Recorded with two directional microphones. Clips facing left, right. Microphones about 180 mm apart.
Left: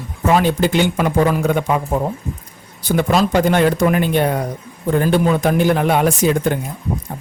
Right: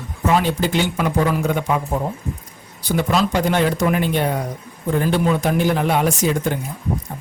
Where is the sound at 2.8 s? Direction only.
50° left (ahead or behind).